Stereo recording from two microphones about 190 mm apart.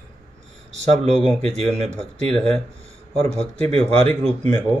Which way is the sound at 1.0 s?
35° right (ahead or behind).